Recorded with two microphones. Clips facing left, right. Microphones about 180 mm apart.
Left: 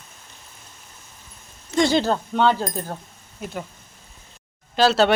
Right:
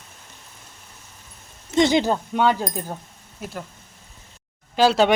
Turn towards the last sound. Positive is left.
turn(degrees=-10)  # may be behind; listen again after turning